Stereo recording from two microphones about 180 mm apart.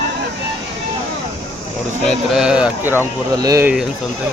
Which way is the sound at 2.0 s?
5° right (ahead or behind).